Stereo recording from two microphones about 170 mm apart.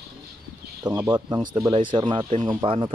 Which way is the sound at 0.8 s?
25° right (ahead or behind).